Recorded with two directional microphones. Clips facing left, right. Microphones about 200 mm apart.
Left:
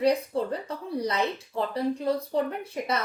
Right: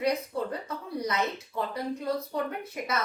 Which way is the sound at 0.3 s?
30° left (ahead or behind).